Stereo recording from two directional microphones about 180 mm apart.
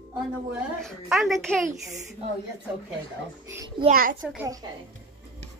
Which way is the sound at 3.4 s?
15° right (ahead or behind).